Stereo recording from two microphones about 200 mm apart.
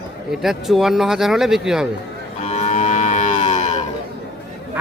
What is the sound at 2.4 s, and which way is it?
Livestock, 35° left (ahead or behind).